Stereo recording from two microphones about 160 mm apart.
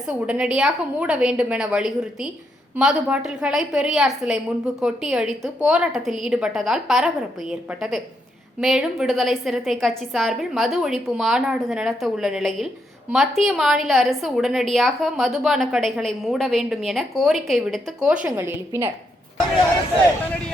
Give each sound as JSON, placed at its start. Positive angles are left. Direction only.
{"t": 0.3, "sound": "a woman's voice", "side_deg": -5}